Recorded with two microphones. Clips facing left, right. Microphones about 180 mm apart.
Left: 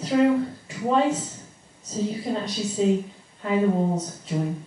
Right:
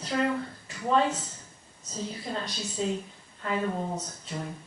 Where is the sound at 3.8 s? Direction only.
25° left (ahead or behind).